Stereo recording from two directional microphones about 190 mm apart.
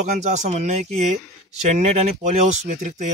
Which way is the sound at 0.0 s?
40° right (ahead or behind).